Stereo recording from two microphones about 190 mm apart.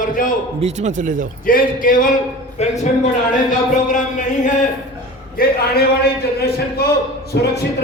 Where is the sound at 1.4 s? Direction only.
45° left (ahead or behind).